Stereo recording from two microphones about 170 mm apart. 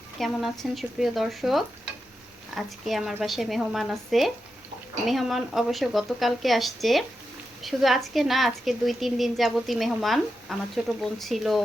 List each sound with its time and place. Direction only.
0.2 s a woman's voice: centre (ahead or behind)